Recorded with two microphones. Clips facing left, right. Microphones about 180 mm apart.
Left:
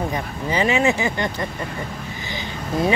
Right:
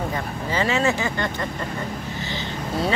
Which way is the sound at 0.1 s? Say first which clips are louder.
Left 2 dB; 15° left (ahead or behind).